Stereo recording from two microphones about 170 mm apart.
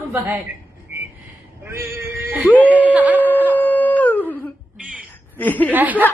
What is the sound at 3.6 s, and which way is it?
Dog, 10° left (ahead or behind).